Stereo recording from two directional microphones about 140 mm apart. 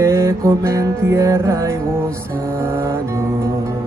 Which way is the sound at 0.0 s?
20° right (ahead or behind).